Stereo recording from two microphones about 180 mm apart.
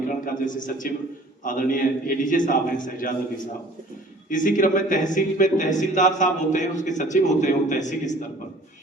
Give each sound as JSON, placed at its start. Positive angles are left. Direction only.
{"t": 0.3, "sound": "a man's voice", "side_deg": 45}